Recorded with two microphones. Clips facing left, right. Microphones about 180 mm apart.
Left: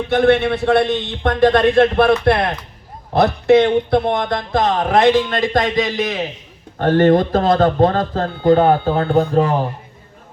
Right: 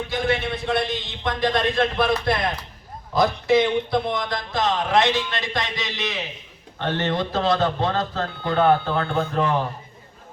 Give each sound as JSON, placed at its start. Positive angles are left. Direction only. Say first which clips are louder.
{"t": 0.1, "sound": "a man's voice", "louder": "left 12 dB", "side_deg": 65}